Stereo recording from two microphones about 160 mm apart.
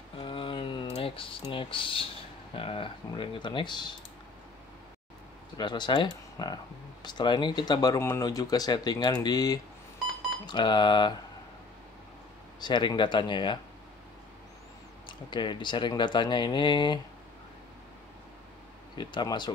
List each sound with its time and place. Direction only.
0.2 s typing: 30° left (ahead or behind)
2.5 s speech: 35° left (ahead or behind)
5.6 s speech: 30° left (ahead or behind)
12.5 s speech: 25° left (ahead or behind)
15.0 s speech: 30° left (ahead or behind)
18.9 s speech: 30° left (ahead or behind)